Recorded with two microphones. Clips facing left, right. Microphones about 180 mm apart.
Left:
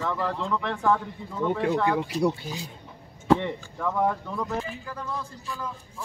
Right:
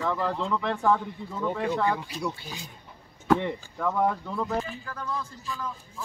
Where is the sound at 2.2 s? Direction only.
30° left (ahead or behind).